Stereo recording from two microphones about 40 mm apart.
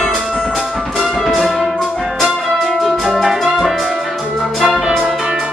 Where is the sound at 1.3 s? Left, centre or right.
Centre.